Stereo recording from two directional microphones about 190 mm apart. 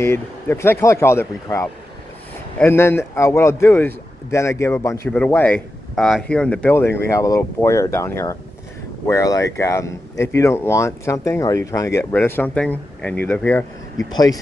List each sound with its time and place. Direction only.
0.0 s speech: 10° left (ahead or behind)
14.1 s speech: 20° left (ahead or behind)